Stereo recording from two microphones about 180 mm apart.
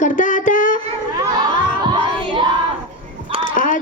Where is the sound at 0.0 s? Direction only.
45° left (ahead or behind).